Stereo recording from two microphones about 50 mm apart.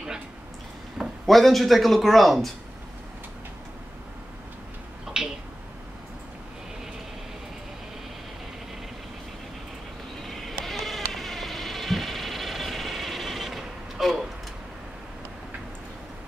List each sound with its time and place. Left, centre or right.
1.2 s a man's voice: centre
5.2 s a sound: centre
10.2 s insect: centre